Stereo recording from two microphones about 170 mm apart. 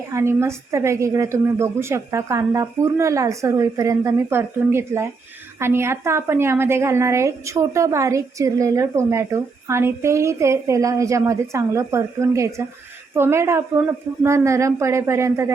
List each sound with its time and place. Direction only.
0.1 s a woman's voice: 15° right (ahead or behind)